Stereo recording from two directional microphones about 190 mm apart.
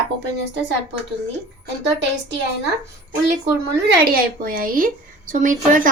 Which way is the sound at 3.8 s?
50° right (ahead or behind).